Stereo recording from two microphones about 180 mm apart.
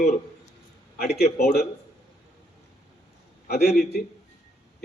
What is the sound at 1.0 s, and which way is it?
Speech, 60° left (ahead or behind).